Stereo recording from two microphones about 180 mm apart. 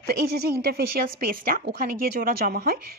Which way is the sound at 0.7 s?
55° right (ahead or behind).